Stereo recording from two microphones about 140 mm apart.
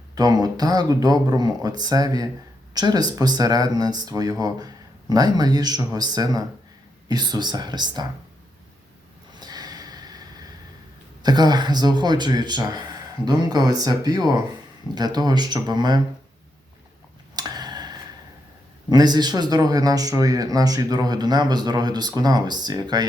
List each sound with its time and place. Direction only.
0.2 s speech: 25° right (ahead or behind)
9.3 s snort: 30° right (ahead or behind)
11.2 s speech: 30° right (ahead or behind)
17.3 s tick-tock: 30° right (ahead or behind)
18.9 s speech: 30° right (ahead or behind)